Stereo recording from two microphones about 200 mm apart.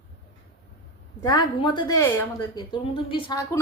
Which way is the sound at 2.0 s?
10° left (ahead or behind).